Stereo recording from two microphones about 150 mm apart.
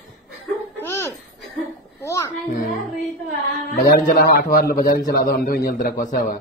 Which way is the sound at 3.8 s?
70° left (ahead or behind).